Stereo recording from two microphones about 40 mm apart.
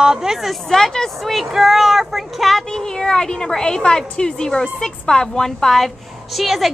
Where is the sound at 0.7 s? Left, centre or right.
Centre.